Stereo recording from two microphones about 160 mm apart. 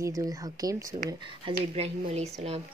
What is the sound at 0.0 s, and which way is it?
Speech, 20° right (ahead or behind).